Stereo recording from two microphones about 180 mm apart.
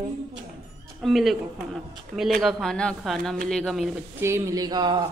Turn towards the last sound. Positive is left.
turn(degrees=-25)  # may be behind; listen again after turning